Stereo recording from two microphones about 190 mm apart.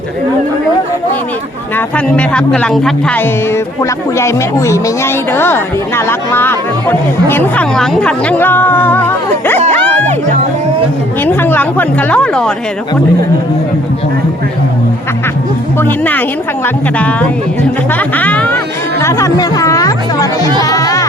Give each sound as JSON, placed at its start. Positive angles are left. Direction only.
{"t": 1.7, "sound": "speech", "side_deg": 5}
{"t": 9.7, "sound": "music", "side_deg": 10}
{"t": 11.3, "sound": "speech", "side_deg": 10}
{"t": 15.8, "sound": "speech", "side_deg": 10}